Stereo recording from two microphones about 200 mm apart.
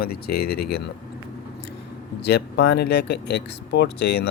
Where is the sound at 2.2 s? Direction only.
55° left (ahead or behind).